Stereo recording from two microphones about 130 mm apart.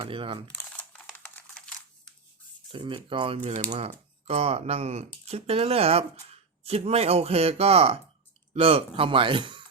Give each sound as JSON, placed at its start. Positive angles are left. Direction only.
{"t": 0.0, "sound": "speech", "side_deg": -45}
{"t": 1.0, "sound": "typing", "side_deg": 10}
{"t": 2.7, "sound": "speech", "side_deg": -40}